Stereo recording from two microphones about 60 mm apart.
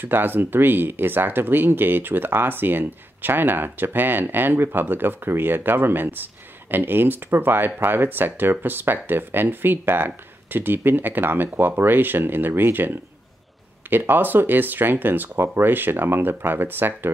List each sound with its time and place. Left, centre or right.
0.0 s speech: right